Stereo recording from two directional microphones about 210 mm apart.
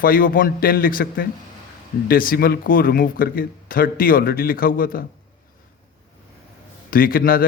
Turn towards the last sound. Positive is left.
turn(degrees=45)  # may be behind; listen again after turning